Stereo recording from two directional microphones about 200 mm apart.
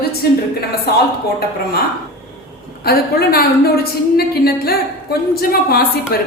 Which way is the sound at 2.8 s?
50° left (ahead or behind).